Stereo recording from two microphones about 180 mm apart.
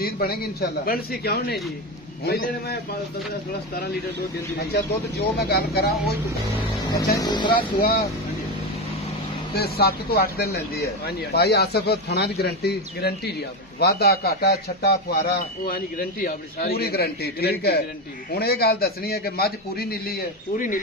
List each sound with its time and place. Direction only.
0.0 s a man's voice: 55° left (ahead or behind)
4.7 s a man's voice: 60° left (ahead or behind)
7.2 s speech: 25° left (ahead or behind)
9.5 s a man's voice: 60° left (ahead or behind)